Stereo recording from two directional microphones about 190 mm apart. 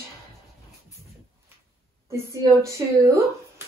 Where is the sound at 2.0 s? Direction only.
15° right (ahead or behind).